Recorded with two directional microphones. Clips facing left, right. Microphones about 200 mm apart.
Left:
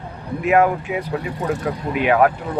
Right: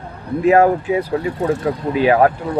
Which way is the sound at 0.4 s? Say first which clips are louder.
Right 4 dB; 35° right (ahead or behind).